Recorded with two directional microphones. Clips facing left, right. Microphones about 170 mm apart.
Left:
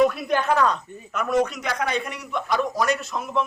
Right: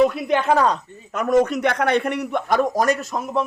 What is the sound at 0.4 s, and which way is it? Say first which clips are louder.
Speech: right 3 dB; 35° right (ahead or behind).